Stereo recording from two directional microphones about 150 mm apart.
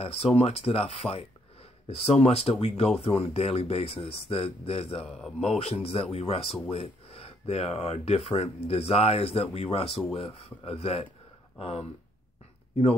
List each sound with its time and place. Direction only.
0.0 s speech: 40° left (ahead or behind)